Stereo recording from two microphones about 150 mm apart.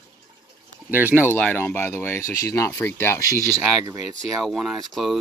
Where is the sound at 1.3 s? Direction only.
10° left (ahead or behind).